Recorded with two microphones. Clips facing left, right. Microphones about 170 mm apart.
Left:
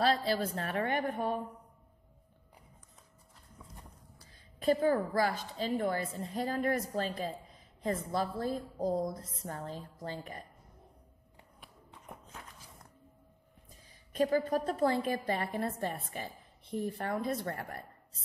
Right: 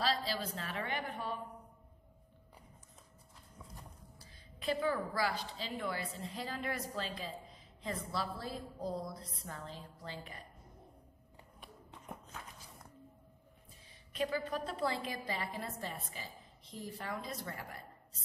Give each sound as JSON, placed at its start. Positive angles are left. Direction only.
{"t": 0.0, "sound": "a woman's voice", "side_deg": 55}
{"t": 4.6, "sound": "a woman's voice", "side_deg": 45}
{"t": 14.1, "sound": "a woman's voice", "side_deg": 45}